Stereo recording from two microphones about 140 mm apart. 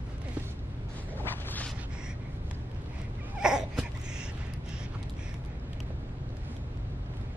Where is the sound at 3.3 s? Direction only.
5° right (ahead or behind).